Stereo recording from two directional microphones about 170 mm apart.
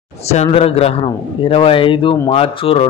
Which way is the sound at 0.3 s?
35° left (ahead or behind).